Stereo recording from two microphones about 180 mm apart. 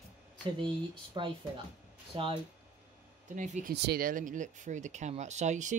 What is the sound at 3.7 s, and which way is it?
Speech, 60° right (ahead or behind).